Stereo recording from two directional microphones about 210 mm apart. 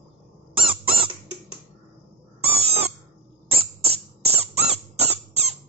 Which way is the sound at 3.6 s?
30° right (ahead or behind).